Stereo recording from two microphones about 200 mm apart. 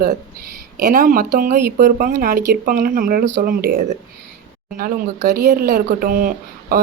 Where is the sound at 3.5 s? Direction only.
45° right (ahead or behind).